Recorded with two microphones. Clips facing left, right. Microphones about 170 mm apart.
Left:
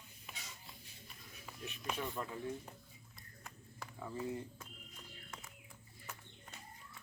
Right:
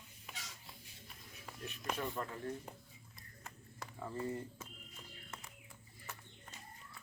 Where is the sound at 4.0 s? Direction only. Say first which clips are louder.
Right 1 dB; centre (ahead or behind).